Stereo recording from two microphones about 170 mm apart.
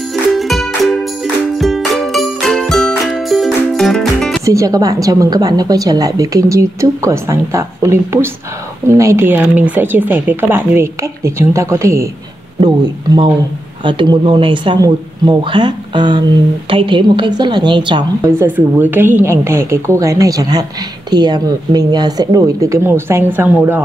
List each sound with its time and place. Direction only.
0.1 s music: centre (ahead or behind)
4.5 s a woman's voice: 20° right (ahead or behind)
12.5 s a woman's voice: 25° right (ahead or behind)
18.2 s a woman's voice: 15° right (ahead or behind)